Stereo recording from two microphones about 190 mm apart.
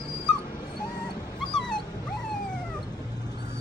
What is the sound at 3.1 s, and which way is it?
Vehicle, 20° left (ahead or behind).